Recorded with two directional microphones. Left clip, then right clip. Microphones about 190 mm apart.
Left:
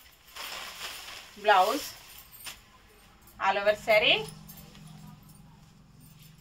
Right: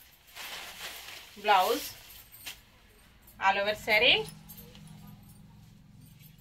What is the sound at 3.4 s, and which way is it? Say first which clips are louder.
Speech: left 1 dB; 5° left (ahead or behind).